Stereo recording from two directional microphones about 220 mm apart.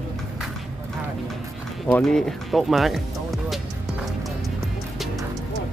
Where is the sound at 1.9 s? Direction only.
5° left (ahead or behind).